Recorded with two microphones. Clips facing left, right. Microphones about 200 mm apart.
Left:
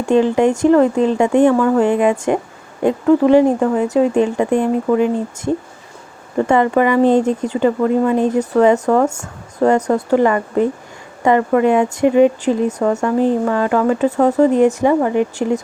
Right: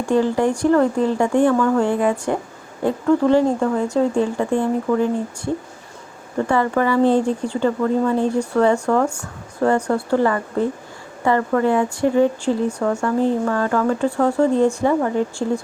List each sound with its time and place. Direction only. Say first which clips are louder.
0.0 s speech: left 4 dB; 20° left (ahead or behind)